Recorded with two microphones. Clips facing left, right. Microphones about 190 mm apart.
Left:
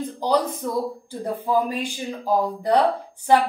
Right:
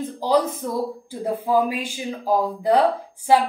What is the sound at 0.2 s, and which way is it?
A woman's voice, 5° right (ahead or behind).